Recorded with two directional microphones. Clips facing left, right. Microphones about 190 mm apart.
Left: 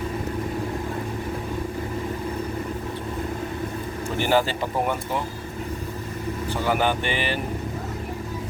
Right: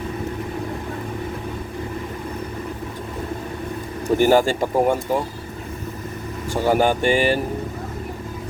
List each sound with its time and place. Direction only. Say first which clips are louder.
4.2 s speech: right 5 dB; 45° right (ahead or behind)
6.7 s speech: right 6 dB; 45° right (ahead or behind)